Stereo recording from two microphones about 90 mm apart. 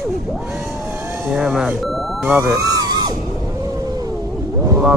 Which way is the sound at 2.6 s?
40° right (ahead or behind).